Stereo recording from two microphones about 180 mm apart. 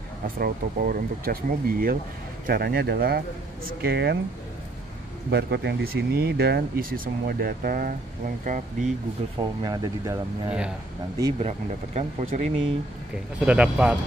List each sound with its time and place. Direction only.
0.4 s speech: 55° right (ahead or behind)
5.3 s speech: 70° right (ahead or behind); by 8.9 s 45° right (ahead or behind)
9.4 s speech: 25° right (ahead or behind)
11.3 s speech: 40° right (ahead or behind)
13.5 s speech: 5° right (ahead or behind)